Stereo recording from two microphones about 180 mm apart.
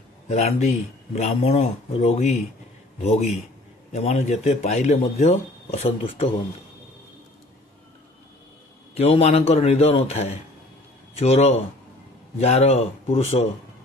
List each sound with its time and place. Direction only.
0.3 s speech: 40° left (ahead or behind)
3.9 s speech: 35° left (ahead or behind)
8.9 s speech: 35° left (ahead or behind)